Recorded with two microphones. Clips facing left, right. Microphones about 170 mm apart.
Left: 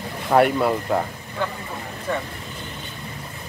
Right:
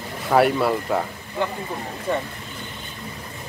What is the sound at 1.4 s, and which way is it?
Speech, 20° right (ahead or behind).